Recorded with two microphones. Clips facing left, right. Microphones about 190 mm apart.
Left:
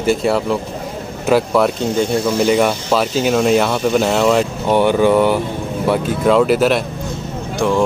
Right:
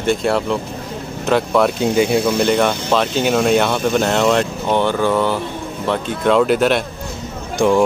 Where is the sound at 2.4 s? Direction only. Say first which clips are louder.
Left 1 dB; 5° left (ahead or behind).